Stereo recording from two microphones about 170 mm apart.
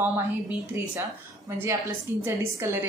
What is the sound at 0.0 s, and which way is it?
A woman's voice, 10° right (ahead or behind).